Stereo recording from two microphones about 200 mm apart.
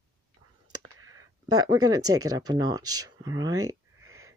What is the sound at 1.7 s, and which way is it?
Speech, 20° right (ahead or behind).